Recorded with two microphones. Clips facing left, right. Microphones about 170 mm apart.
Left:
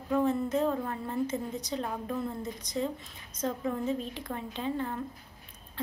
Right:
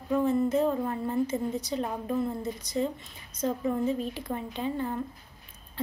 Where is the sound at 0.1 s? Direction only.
Centre (ahead or behind).